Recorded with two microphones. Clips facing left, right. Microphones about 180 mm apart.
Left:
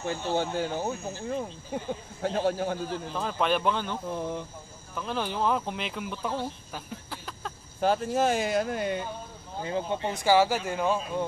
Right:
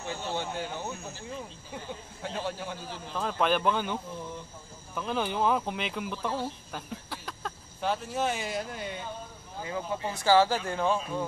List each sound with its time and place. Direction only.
0.0 s speech: 45° left (ahead or behind)
2.9 s speech: centre (ahead or behind)
4.1 s speech: 65° left (ahead or behind)
4.9 s speech: centre (ahead or behind)
7.8 s speech: 45° left (ahead or behind)
8.5 s speech: 60° left (ahead or behind)
9.6 s speech: 30° left (ahead or behind); by 11.2 s 10° left (ahead or behind)